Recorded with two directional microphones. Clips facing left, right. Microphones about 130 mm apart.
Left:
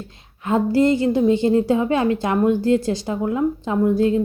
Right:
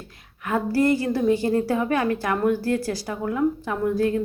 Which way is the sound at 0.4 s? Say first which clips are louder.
Left 4 dB; 20° left (ahead or behind).